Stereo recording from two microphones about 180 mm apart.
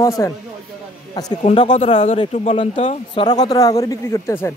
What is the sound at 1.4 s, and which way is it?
A man's voice, 35° left (ahead or behind).